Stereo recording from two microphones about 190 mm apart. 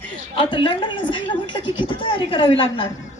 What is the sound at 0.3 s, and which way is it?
A woman's voice, 25° left (ahead or behind).